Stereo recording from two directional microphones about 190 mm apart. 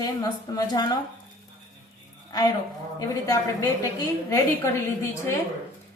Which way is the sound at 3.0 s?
20° left (ahead or behind).